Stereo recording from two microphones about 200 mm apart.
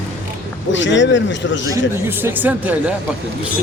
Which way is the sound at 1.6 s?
15° right (ahead or behind).